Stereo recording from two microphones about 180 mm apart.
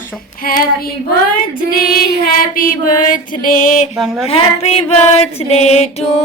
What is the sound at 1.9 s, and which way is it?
Speech, 60° left (ahead or behind).